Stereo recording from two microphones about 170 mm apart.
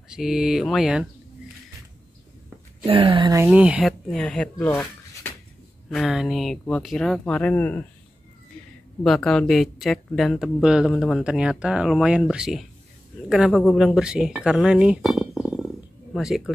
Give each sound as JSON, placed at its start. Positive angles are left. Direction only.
{"t": 0.1, "sound": "speech", "side_deg": 0}
{"t": 2.8, "sound": "speech", "side_deg": -30}
{"t": 3.3, "sound": "a woman's voice", "side_deg": -5}
{"t": 4.1, "sound": "speech", "side_deg": 5}
{"t": 4.6, "sound": "a sound", "side_deg": 10}
{"t": 5.9, "sound": "speech", "side_deg": 0}
{"t": 9.0, "sound": "speech", "side_deg": 0}